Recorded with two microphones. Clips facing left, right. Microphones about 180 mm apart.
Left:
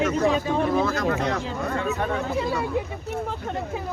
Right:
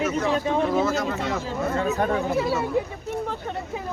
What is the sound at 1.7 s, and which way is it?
Speech, 35° right (ahead or behind).